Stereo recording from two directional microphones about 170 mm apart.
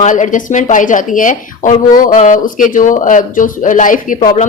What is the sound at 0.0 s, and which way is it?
A woman's voice, 50° left (ahead or behind).